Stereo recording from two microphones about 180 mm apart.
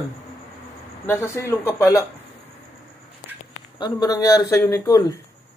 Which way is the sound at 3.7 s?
20° left (ahead or behind).